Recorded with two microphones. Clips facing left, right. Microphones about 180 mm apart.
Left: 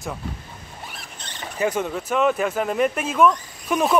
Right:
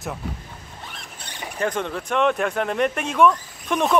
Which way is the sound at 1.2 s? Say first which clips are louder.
Right 1 dB; 10° right (ahead or behind).